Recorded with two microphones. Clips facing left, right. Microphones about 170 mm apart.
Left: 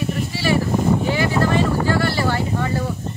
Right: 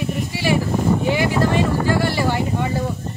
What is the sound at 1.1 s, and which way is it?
Speech, 15° right (ahead or behind).